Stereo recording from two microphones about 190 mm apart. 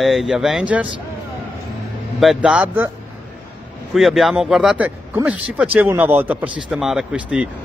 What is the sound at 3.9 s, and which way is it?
Speech, centre (ahead or behind).